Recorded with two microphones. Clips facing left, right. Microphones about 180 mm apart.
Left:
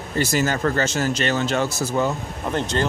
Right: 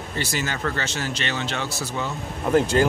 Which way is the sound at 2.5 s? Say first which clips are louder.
Right 5 dB; 5° right (ahead or behind).